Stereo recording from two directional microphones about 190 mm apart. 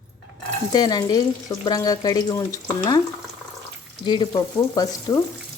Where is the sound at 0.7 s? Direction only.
20° left (ahead or behind).